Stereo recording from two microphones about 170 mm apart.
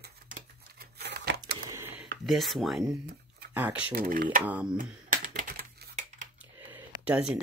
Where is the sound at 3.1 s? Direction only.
65° right (ahead or behind).